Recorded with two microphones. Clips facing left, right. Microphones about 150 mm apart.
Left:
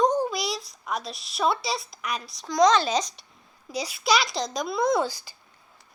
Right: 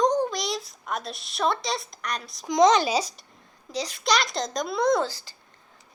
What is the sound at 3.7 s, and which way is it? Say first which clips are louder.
A child's voice: left 1 dB; 10° left (ahead or behind).